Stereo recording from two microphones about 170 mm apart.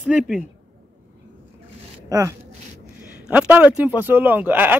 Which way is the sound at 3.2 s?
5° right (ahead or behind).